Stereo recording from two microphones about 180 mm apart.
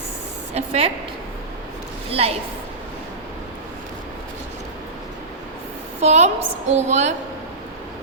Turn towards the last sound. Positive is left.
turn(degrees=-40)  # may be behind; listen again after turning